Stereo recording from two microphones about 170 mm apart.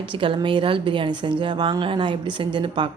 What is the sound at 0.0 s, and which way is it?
Speech, 30° right (ahead or behind).